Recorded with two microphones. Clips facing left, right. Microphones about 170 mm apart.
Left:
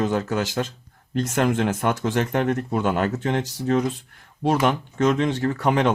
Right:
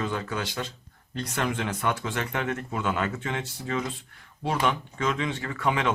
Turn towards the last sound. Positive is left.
turn(degrees=40)  # may be behind; listen again after turning